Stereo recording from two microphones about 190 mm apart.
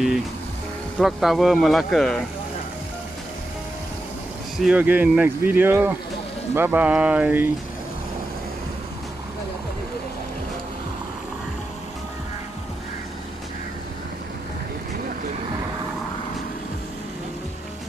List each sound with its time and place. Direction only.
0.9 s speech: centre (ahead or behind)
4.6 s speech: 5° right (ahead or behind)